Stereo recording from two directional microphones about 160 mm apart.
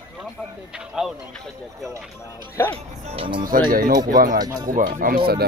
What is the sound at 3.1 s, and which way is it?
A man's voice, 35° right (ahead or behind).